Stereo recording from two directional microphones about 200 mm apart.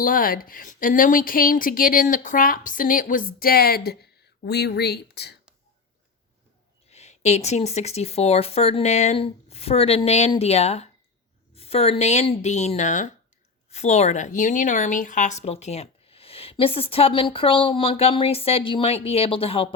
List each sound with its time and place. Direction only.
0.0 s speech: 45° left (ahead or behind)
6.9 s speech: 35° left (ahead or behind)